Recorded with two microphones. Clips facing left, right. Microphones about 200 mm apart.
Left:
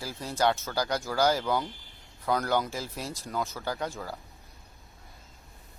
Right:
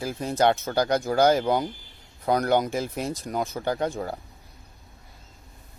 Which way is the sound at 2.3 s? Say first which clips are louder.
Right 5 dB; 20° right (ahead or behind).